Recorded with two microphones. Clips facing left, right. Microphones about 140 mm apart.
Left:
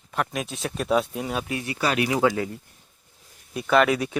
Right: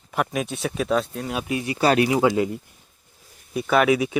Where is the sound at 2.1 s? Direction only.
20° right (ahead or behind).